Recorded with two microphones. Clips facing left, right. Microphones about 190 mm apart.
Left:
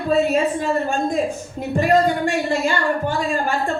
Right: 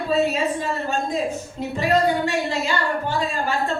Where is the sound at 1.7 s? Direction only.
50° left (ahead or behind).